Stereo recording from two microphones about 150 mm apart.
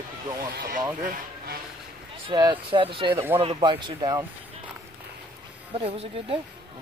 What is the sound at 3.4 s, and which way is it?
Speech, 35° right (ahead or behind).